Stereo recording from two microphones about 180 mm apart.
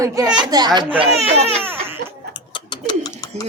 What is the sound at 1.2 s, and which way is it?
Speech, 35° right (ahead or behind).